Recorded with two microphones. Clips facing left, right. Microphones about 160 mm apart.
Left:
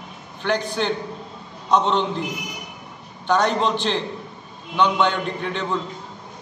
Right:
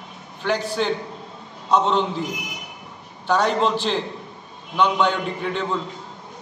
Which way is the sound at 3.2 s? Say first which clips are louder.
Even; 5° right (ahead or behind).